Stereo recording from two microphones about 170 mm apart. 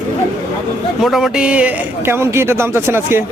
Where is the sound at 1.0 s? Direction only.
Centre (ahead or behind).